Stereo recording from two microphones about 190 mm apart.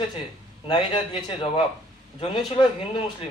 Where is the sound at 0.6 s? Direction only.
25° left (ahead or behind).